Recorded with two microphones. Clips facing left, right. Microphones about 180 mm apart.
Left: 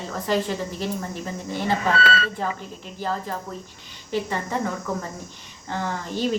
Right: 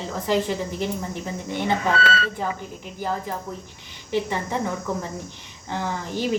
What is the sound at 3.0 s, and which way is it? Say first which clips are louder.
A woman's voice: even; 15° right (ahead or behind).